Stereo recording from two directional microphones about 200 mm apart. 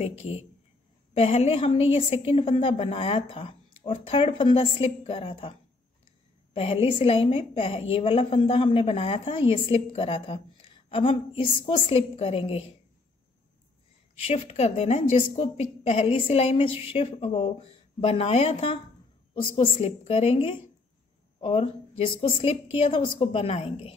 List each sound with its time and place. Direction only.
0.0 s a woman's voice: 30° left (ahead or behind)
6.5 s a woman's voice: 30° left (ahead or behind)
14.1 s a woman's voice: 30° left (ahead or behind)